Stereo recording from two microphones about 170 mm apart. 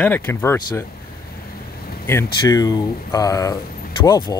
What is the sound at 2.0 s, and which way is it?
Speech, 20° left (ahead or behind).